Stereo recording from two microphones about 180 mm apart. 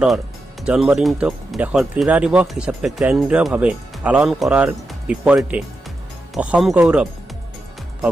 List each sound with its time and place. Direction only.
0.7 s speech: 5° right (ahead or behind)